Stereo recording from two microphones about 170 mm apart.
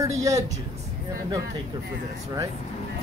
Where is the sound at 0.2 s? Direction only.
20° right (ahead or behind).